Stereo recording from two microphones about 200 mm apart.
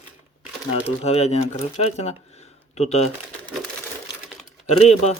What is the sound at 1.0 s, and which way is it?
Speech, 35° left (ahead or behind).